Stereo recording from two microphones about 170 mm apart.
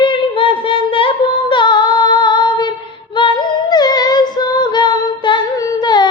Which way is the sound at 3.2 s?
25° left (ahead or behind).